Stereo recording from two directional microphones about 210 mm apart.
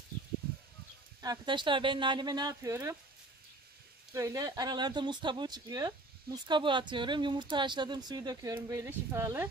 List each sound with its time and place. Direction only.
1.2 s speech: 20° right (ahead or behind)
4.1 s speech: 15° right (ahead or behind)